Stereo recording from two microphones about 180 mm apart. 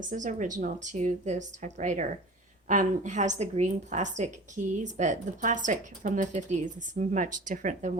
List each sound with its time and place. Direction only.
0.0 s a woman's voice: 45° right (ahead or behind)